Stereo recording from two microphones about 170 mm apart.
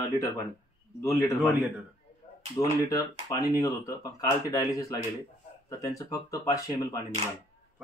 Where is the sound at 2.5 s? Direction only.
20° left (ahead or behind).